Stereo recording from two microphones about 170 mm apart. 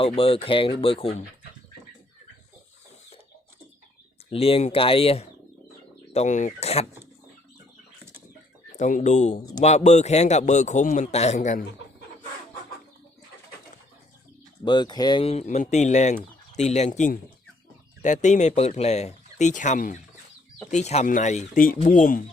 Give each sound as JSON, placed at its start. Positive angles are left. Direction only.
{"t": 0.0, "sound": "speech", "side_deg": 35}
{"t": 4.3, "sound": "speech", "side_deg": 35}
{"t": 6.1, "sound": "speech", "side_deg": 45}
{"t": 8.8, "sound": "a man's voice", "side_deg": 45}
{"t": 14.6, "sound": "a man's voice", "side_deg": 25}